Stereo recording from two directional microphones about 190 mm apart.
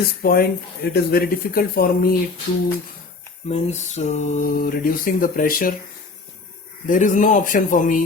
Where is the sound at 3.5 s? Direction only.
35° left (ahead or behind).